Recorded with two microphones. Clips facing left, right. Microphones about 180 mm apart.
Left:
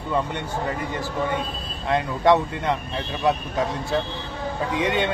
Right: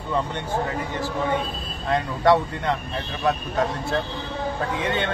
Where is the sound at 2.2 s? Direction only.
20° left (ahead or behind).